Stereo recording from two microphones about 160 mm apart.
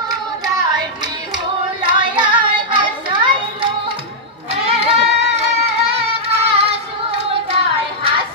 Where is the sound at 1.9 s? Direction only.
30° right (ahead or behind).